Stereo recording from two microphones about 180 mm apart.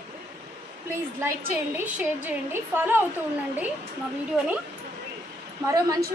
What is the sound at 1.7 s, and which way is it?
Speech, 10° right (ahead or behind).